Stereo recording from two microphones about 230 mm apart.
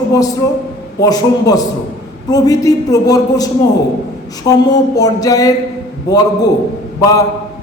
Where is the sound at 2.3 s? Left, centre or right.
Centre.